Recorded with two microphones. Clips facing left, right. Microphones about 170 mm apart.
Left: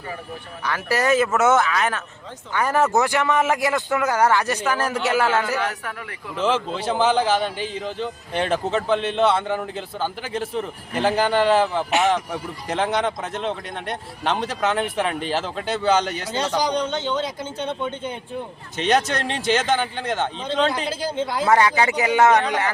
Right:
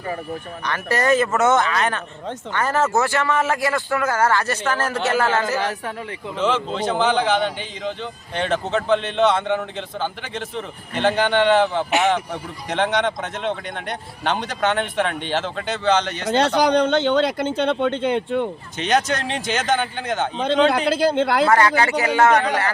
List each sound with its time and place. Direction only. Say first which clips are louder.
0.6 s a man's voice: even; 5° left (ahead or behind)
5.5 s a man's voice: right 2 dB; 30° right (ahead or behind)
6.4 s a man's voice: right 1 dB; 5° left (ahead or behind)
16.6 s speech: right 5 dB; 65° right (ahead or behind)
18.8 s a man's voice: even; centre (ahead or behind)
20.7 s speech: right 7 dB; 70° right (ahead or behind)
21.4 s a man's voice: left 2 dB; 15° left (ahead or behind)